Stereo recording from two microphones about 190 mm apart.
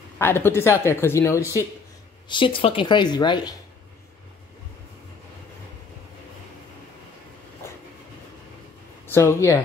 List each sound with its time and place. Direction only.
0.2 s speech: 10° left (ahead or behind)
2.2 s a woman's voice: 25° left (ahead or behind)
9.0 s speech: 15° left (ahead or behind)